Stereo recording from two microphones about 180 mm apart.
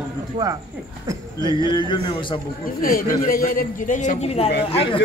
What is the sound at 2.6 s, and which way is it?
A man's voice, 50° left (ahead or behind).